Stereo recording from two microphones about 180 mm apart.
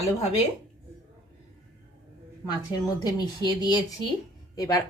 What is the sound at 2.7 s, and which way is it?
A woman's voice, 20° left (ahead or behind).